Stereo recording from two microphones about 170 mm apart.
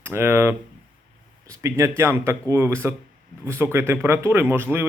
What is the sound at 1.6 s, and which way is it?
Speech, 15° right (ahead or behind).